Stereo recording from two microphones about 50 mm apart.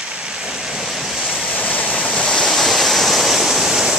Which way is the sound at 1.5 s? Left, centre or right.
Left.